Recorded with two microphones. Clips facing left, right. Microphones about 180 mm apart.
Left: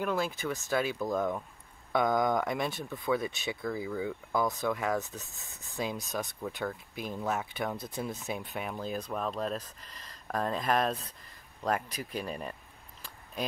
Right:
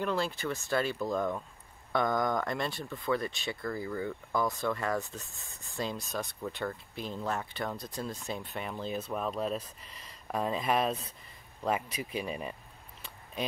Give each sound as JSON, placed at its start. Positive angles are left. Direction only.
{"t": 0.0, "sound": "speech", "side_deg": 5}
{"t": 4.5, "sound": "speech", "side_deg": 15}
{"t": 4.7, "sound": "speech", "side_deg": 0}
{"t": 13.0, "sound": "a sound", "side_deg": 0}